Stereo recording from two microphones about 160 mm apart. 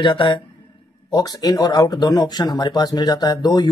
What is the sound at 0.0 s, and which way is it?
A man's voice, 30° left (ahead or behind).